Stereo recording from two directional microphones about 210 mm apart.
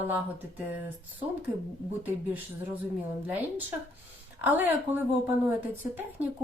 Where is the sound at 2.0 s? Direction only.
10° right (ahead or behind).